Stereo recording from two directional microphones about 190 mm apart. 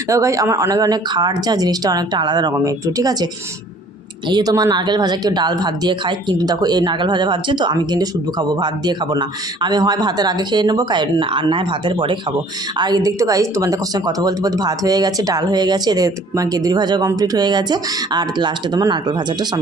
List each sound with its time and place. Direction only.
0.1 s speech: 15° right (ahead or behind)
4.3 s speech: 20° right (ahead or behind)